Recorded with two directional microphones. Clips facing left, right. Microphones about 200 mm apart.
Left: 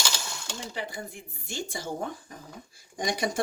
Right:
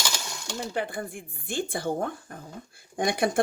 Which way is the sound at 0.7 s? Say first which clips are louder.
Right 6 dB; 55° right (ahead or behind).